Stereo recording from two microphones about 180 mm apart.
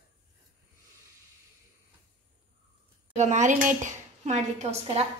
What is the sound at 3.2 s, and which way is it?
Speech, 40° right (ahead or behind).